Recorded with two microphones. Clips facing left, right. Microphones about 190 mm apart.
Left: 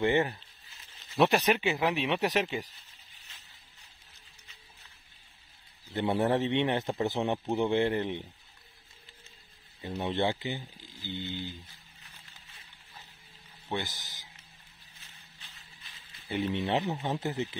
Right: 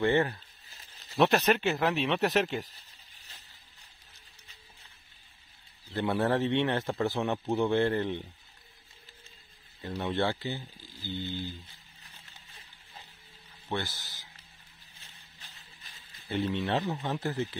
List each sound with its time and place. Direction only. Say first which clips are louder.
0.0 s speech: right 1 dB; 15° left (ahead or behind)
5.9 s a man's voice: even; 20° left (ahead or behind)
9.8 s speech: even; 10° left (ahead or behind)
13.7 s speech: even; 15° left (ahead or behind)
15.4 s vehicle: right 2 dB; 45° right (ahead or behind)
16.3 s a man's voice: even; 20° left (ahead or behind)